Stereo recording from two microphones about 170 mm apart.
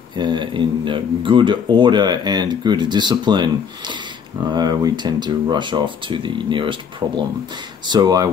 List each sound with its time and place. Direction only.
0.1 s speech: 25° right (ahead or behind)